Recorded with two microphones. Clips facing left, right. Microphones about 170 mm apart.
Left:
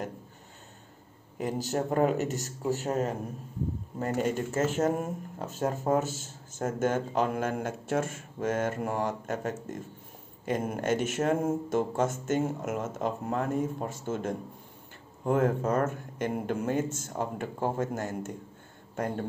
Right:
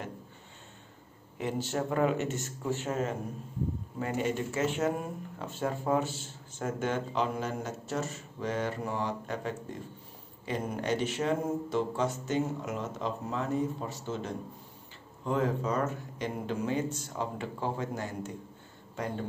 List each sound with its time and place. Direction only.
1.4 s speech: 40° left (ahead or behind)